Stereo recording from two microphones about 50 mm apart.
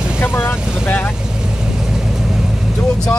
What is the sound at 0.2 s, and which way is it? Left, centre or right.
Vehicle, left.